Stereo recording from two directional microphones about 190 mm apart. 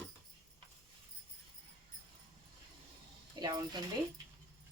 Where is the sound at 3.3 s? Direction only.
20° right (ahead or behind).